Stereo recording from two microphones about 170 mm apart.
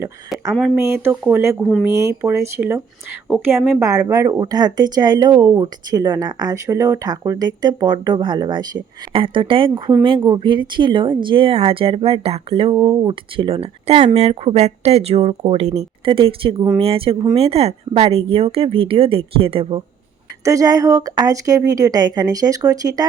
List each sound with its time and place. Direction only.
0.6 s speech: 15° right (ahead or behind)
13.3 s speech: 30° right (ahead or behind)
20.4 s speech: 20° right (ahead or behind)